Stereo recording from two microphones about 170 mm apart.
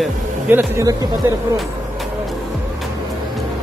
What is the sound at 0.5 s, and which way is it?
Speech, 15° right (ahead or behind).